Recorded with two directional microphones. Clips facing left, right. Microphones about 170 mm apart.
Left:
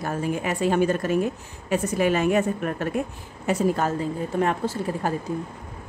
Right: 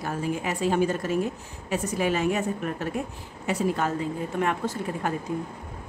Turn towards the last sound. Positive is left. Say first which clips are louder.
# left 3 dB
turn(degrees=35)  # may be behind; listen again after turning